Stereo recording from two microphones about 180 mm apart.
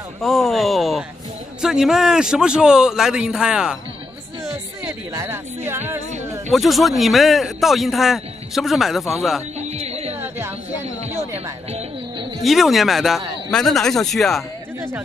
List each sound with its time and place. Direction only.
0.2 s a man's voice: centre (ahead or behind)
4.8 s speech: 15° right (ahead or behind)
5.7 s music: 15° right (ahead or behind)
6.5 s a man's voice: centre (ahead or behind)
9.6 s music: 35° right (ahead or behind)
10.1 s a sound: 10° right (ahead or behind)
10.8 s a sound: 35° right (ahead or behind)
12.4 s a man's voice: centre (ahead or behind)